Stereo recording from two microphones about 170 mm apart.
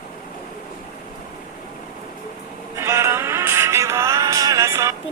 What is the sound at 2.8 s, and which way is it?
Music, 15° right (ahead or behind).